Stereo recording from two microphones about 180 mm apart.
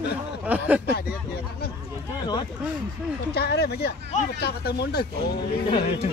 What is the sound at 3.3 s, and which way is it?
Speech, 65° left (ahead or behind).